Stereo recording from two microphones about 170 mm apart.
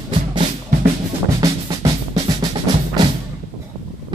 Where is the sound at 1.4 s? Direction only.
25° right (ahead or behind).